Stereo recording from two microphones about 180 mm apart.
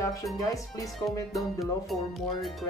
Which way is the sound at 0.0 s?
20° left (ahead or behind).